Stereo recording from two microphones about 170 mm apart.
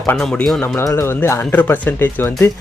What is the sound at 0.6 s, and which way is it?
Speech, 15° left (ahead or behind).